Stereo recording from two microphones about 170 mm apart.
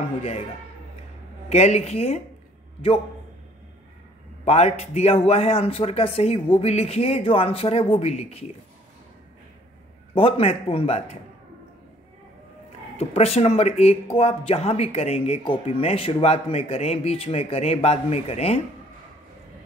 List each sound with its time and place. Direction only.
1.5 s speech: 40° left (ahead or behind)
4.5 s speech: 40° left (ahead or behind)
10.1 s speech: 35° left (ahead or behind)
12.9 s speech: 40° left (ahead or behind)